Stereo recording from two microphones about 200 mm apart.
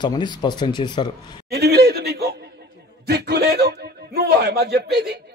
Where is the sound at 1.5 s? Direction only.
55° right (ahead or behind).